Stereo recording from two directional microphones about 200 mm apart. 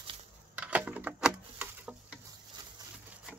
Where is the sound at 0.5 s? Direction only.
5° right (ahead or behind).